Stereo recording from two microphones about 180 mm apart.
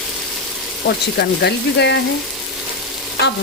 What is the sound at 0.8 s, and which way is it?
A woman's voice, 65° left (ahead or behind).